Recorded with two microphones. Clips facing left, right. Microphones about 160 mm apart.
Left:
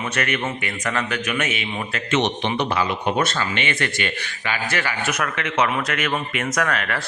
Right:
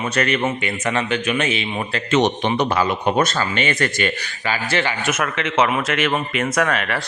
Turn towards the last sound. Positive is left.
turn(degrees=-25)  # may be behind; listen again after turning